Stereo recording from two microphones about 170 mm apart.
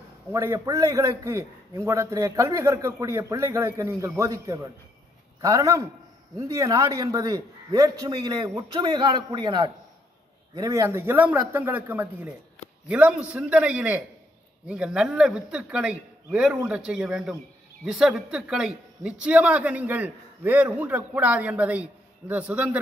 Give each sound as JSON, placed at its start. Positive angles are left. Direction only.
{"t": 0.3, "sound": "a man's voice", "side_deg": -15}